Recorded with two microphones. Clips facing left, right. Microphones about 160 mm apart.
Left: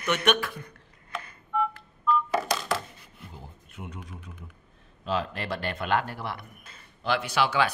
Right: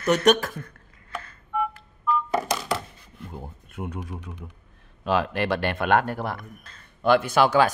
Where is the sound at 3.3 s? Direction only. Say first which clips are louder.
Right 9 dB; 55° right (ahead or behind); by 4.4 s 80° right.